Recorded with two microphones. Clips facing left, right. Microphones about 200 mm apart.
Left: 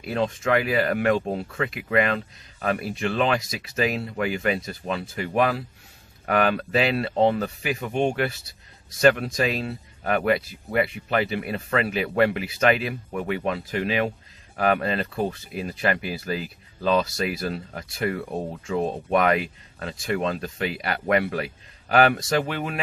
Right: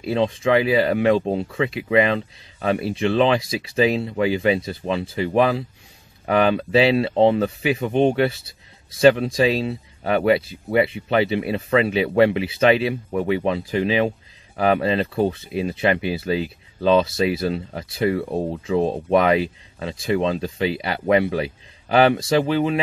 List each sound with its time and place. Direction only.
0.0 s speech: 25° right (ahead or behind)
6.5 s speech: 30° right (ahead or behind)